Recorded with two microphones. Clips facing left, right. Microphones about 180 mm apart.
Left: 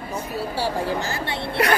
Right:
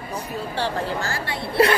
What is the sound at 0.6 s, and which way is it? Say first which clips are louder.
Speech: left 1 dB; 10° left (ahead or behind).